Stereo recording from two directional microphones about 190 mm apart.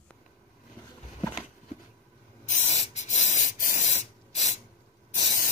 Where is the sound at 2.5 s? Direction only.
35° left (ahead or behind).